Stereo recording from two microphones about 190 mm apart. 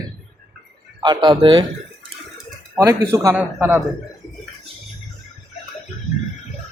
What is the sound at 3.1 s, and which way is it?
Speech, 15° right (ahead or behind).